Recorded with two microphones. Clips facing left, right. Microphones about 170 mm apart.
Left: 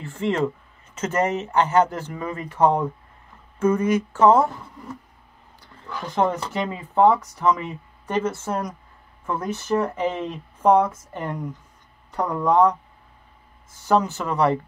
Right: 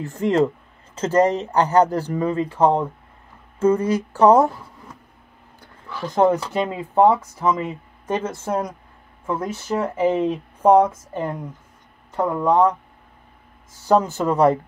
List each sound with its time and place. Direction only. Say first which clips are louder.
0.0 s speech: right 4 dB; 40° right (ahead or behind)
6.1 s speech: right 5 dB; 10° right (ahead or behind)
7.5 s speech: right 5 dB; 25° right (ahead or behind)
9.3 s speech: even; 10° right (ahead or behind)
12.2 s speech: right 1 dB; 25° right (ahead or behind)
13.8 s speech: right 3 dB; 40° right (ahead or behind)